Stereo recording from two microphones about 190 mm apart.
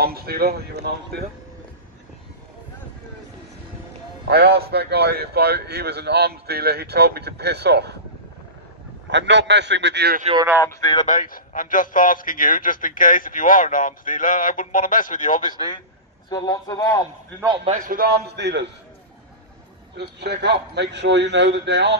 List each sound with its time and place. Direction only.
0.0 s a man's voice: 55° right (ahead or behind)
4.3 s a man's voice: 60° right (ahead or behind)
9.1 s a man's voice: 65° right (ahead or behind)
10.6 s a man's voice: 20° left (ahead or behind)
11.1 s a man's voice: 45° left (ahead or behind)
16.3 s a man's voice: 20° left (ahead or behind)
17.6 s a man's voice: 45° right (ahead or behind); by 18.7 s 60° right (ahead or behind)
20.0 s a man's voice: 60° right (ahead or behind)